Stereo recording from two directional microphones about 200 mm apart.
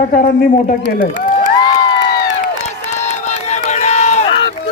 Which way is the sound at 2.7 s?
35° left (ahead or behind).